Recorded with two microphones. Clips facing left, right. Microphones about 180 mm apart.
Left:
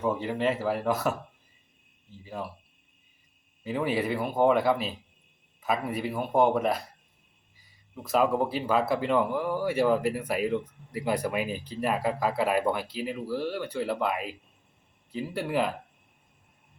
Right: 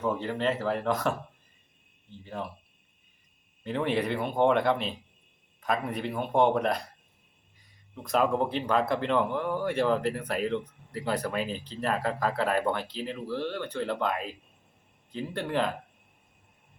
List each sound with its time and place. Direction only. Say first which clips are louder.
0.0 s speech: left 1 dB; 10° left (ahead or behind)
2.2 s speech: even; 5° left (ahead or behind)
3.6 s speech: even; 5° left (ahead or behind)